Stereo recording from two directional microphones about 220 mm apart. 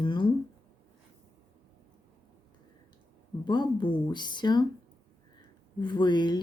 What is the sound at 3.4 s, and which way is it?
Speech, 20° left (ahead or behind).